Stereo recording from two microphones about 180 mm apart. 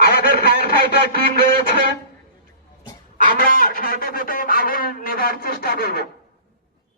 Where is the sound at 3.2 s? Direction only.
50° left (ahead or behind).